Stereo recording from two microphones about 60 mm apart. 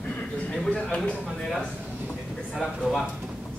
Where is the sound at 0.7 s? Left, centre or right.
Centre.